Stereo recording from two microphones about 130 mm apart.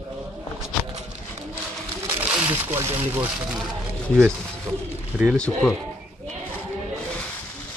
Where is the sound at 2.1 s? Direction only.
15° right (ahead or behind).